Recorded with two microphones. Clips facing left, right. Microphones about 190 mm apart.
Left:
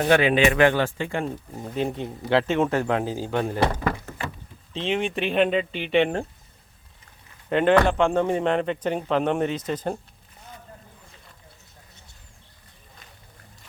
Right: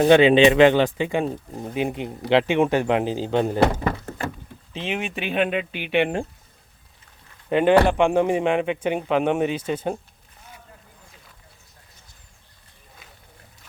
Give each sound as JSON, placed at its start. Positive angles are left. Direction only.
{"t": 0.0, "sound": "speech", "side_deg": -20}
{"t": 4.7, "sound": "speech", "side_deg": -5}
{"t": 7.5, "sound": "speech", "side_deg": -10}